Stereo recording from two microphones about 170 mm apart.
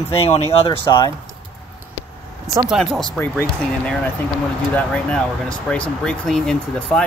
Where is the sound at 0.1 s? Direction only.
35° left (ahead or behind).